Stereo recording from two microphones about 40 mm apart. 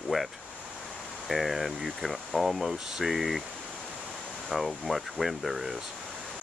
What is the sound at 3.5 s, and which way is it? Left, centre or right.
Pink noise, right.